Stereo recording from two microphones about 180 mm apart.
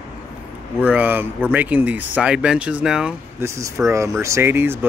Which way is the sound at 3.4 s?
15° right (ahead or behind).